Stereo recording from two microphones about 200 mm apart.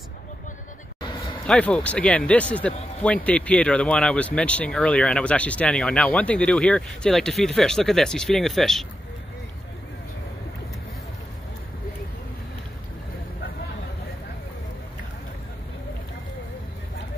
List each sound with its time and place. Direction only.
1.5 s speech: 5° left (ahead or behind)